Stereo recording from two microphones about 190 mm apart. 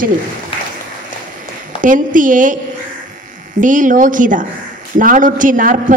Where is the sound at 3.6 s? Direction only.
45° right (ahead or behind).